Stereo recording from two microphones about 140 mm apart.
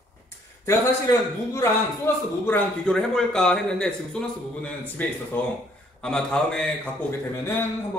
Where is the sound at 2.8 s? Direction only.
5° left (ahead or behind).